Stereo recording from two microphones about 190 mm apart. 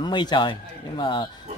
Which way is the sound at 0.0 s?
25° left (ahead or behind).